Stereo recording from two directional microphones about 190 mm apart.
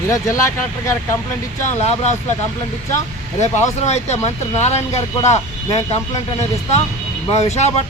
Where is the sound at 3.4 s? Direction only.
40° left (ahead or behind).